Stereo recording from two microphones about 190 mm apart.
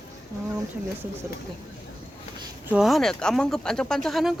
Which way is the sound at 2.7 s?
Centre (ahead or behind).